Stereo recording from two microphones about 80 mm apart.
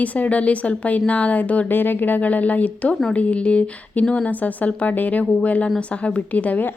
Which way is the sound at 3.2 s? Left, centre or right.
Centre.